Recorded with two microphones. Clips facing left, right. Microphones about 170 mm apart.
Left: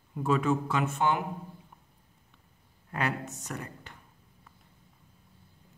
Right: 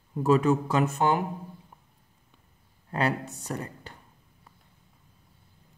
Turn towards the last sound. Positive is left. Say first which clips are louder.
# right 4 dB
turn(degrees=-35)  # may be behind; listen again after turning